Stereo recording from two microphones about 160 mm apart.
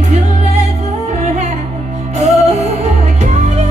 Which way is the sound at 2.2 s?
45° right (ahead or behind).